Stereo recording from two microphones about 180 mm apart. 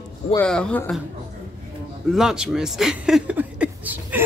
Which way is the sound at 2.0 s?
Centre (ahead or behind).